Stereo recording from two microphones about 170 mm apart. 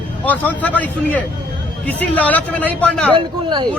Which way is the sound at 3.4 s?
25° right (ahead or behind).